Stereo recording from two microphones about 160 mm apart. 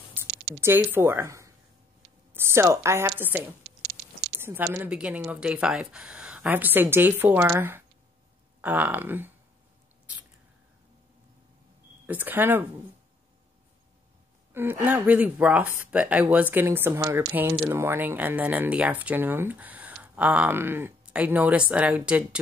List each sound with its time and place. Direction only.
0.6 s speech: 15° right (ahead or behind)
12.1 s speech: 10° right (ahead or behind)
14.5 s speech: 15° right (ahead or behind)